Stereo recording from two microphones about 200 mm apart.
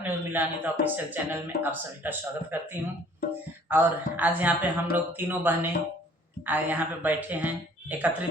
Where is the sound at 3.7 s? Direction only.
10° right (ahead or behind).